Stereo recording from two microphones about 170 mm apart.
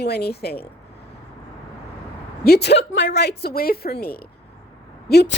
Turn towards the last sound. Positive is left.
turn(degrees=80)